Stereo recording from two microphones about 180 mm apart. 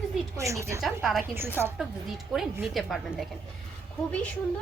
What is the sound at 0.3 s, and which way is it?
Speech, 15° right (ahead or behind).